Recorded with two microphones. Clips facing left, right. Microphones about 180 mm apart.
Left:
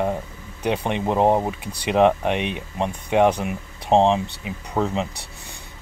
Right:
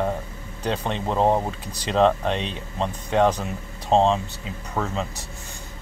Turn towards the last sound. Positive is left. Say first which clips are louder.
# left 4 dB
turn(degrees=15)  # may be behind; listen again after turning